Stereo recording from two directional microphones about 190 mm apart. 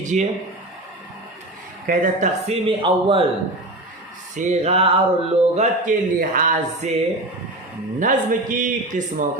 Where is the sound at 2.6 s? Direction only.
30° right (ahead or behind).